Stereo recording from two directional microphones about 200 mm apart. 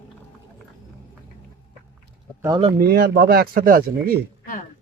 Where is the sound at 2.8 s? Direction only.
50° right (ahead or behind).